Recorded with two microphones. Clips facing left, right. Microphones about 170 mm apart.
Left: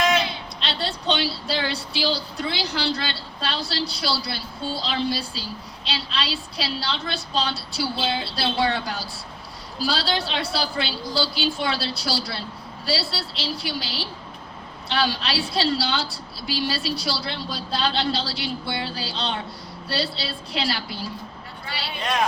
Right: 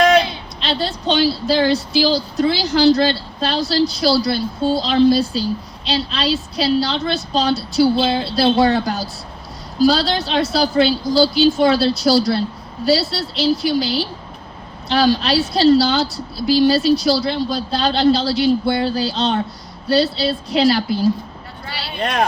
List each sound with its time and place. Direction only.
0.6 s a woman's voice: 40° right (ahead or behind)
21.9 s speech: 55° right (ahead or behind)